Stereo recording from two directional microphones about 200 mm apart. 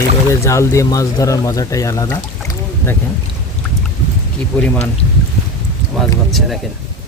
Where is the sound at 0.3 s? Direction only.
15° left (ahead or behind).